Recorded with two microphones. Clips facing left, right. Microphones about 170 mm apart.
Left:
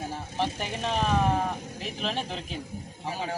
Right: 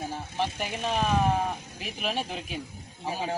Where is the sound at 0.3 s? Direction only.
Centre (ahead or behind).